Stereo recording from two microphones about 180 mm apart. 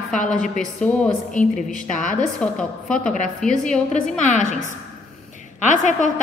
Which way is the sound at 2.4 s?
5° left (ahead or behind).